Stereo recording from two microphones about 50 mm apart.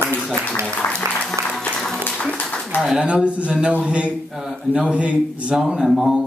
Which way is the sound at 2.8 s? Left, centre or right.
Centre.